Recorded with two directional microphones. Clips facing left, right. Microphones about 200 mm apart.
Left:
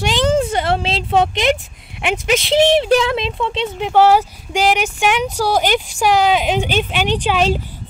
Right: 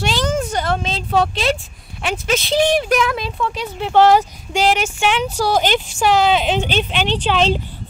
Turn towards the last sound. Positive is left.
turn(degrees=10)  # may be behind; listen again after turning